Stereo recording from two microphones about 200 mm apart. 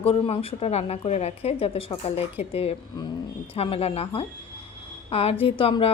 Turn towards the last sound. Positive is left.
turn(degrees=25)  # may be behind; listen again after turning